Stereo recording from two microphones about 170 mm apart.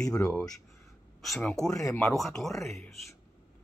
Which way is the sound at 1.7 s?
20° left (ahead or behind).